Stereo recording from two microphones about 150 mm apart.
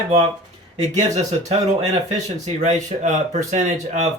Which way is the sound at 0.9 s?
50° right (ahead or behind).